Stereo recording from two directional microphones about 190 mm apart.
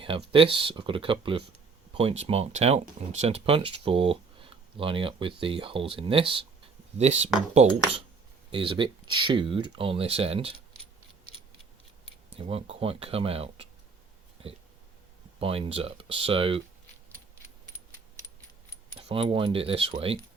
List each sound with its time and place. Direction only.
0.3 s speech: 30° right (ahead or behind)
12.3 s speech: 30° right (ahead or behind)
15.4 s speech: 30° right (ahead or behind)
18.9 s speech: 30° right (ahead or behind)